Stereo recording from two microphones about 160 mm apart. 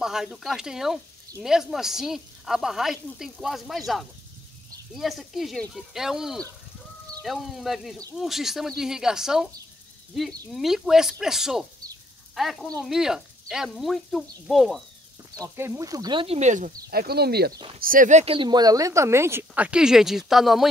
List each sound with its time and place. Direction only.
0.0 s speech: 5° right (ahead or behind)
10.5 s speech: centre (ahead or behind)
15.3 s speech: 20° right (ahead or behind)
16.3 s speech: 50° right (ahead or behind)
16.9 s speech: 75° right (ahead or behind)
17.7 s a woman's voice: 60° right (ahead or behind); by 20.6 s centre (ahead or behind)